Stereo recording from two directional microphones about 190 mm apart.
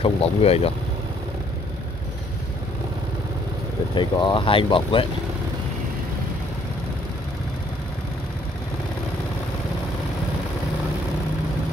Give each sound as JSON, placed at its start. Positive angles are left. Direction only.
{"t": 0.0, "sound": "speech", "side_deg": 30}
{"t": 3.9, "sound": "speech", "side_deg": 25}